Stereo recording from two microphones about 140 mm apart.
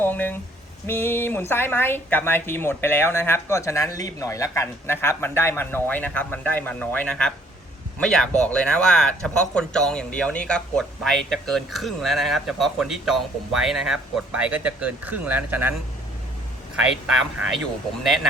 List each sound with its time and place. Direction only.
0.0 s a woman's voice: 10° left (ahead or behind); by 15.7 s 15° right (ahead or behind)